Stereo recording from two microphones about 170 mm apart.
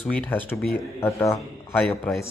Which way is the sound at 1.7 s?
5° left (ahead or behind).